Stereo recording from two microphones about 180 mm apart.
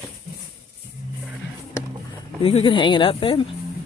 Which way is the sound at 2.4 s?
35° left (ahead or behind).